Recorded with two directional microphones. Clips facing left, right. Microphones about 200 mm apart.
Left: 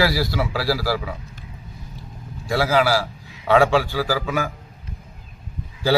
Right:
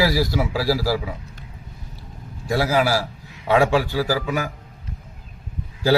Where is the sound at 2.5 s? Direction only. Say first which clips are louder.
Left 1 dB; 20° right (ahead or behind).